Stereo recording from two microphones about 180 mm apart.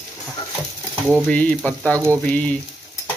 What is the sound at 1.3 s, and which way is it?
Frying, 5° left (ahead or behind).